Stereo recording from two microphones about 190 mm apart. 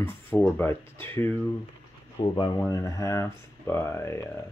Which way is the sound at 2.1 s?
20° left (ahead or behind).